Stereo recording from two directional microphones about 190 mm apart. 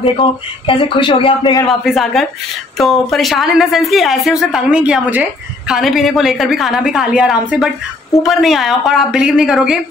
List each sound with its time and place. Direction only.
0.0 s speech: 30° left (ahead or behind)
1.7 s a woman's voice: centre (ahead or behind)